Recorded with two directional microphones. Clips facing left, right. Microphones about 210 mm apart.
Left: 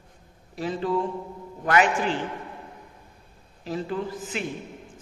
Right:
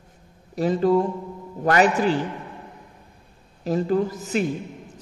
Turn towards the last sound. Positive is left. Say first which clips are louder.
# right 7 dB
turn(degrees=-40)  # may be behind; listen again after turning